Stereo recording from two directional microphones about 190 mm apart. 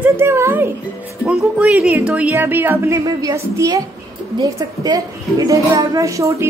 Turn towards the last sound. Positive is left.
turn(degrees=-15)  # may be behind; listen again after turning